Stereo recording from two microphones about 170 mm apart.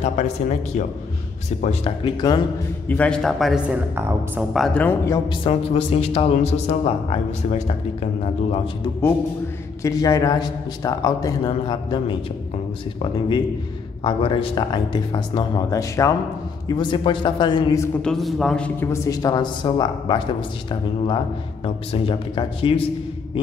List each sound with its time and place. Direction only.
0.0 s speech: 40° left (ahead or behind)
2.9 s speech: 5° left (ahead or behind)
5.3 s speech: 30° left (ahead or behind)
9.8 s a man's voice: 20° left (ahead or behind)
14.0 s a man's voice: 30° left (ahead or behind)
18.0 s a man's voice: centre (ahead or behind); by 20.4 s 30° left (ahead or behind)
21.6 s speech: 30° left (ahead or behind)